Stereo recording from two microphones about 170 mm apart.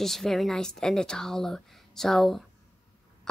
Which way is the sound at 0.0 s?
Centre (ahead or behind).